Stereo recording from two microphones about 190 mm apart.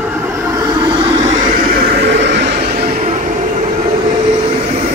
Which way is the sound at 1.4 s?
50° right (ahead or behind).